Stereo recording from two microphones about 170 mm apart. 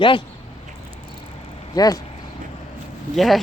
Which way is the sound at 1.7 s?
20° left (ahead or behind).